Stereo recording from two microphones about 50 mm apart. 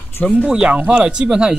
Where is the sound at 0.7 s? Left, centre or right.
Right.